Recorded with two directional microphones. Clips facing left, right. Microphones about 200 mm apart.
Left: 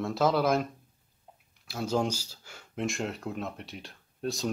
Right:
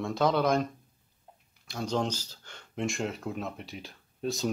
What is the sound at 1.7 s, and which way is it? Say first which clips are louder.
Speech: left 1 dB; 5° left (ahead or behind).